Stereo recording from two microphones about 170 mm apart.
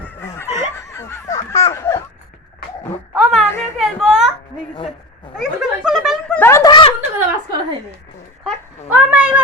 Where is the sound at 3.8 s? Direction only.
5° right (ahead or behind).